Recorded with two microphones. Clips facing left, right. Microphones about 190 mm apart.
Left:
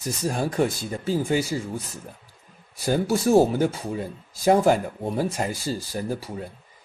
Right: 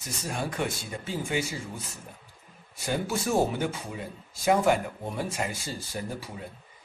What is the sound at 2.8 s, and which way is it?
Speech, 35° left (ahead or behind).